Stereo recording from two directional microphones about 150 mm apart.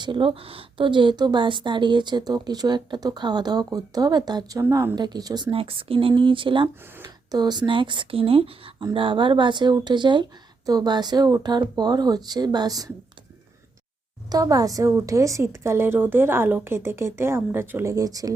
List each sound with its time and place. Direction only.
0.0 s a woman's voice: 35° right (ahead or behind)
6.9 s a woman's voice: 25° right (ahead or behind)
14.3 s a woman's voice: 25° right (ahead or behind)